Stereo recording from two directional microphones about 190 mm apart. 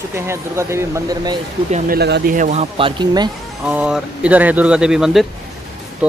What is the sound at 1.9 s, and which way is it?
Speech, 55° right (ahead or behind).